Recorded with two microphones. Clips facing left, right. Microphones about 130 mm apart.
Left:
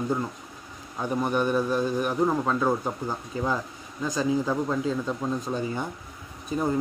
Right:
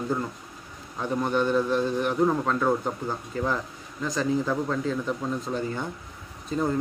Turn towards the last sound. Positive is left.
turn(degrees=15)  # may be behind; listen again after turning